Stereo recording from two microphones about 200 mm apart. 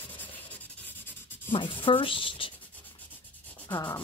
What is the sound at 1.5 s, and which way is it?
A woman's voice, 25° left (ahead or behind).